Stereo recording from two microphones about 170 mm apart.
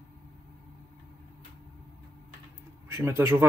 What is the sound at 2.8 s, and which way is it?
Speech, 15° right (ahead or behind).